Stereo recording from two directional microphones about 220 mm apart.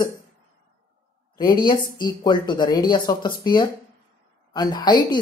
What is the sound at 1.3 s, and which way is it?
Speech, 20° left (ahead or behind).